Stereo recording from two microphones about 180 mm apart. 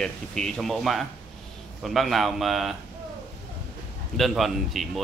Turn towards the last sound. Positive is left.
turn(degrees=0)  # may be behind; listen again after turning